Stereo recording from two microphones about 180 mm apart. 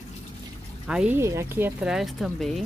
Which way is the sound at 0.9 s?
5° right (ahead or behind).